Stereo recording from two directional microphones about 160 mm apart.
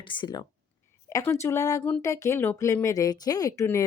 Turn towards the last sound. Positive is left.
turn(degrees=20)  # may be behind; listen again after turning